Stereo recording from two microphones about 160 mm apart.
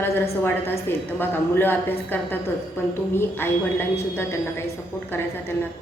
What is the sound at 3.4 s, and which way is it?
Speech, 15° left (ahead or behind).